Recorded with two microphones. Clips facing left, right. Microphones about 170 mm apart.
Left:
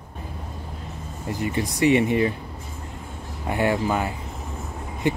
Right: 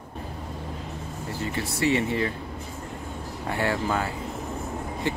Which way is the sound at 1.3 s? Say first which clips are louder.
Left 5 dB; 15° left (ahead or behind).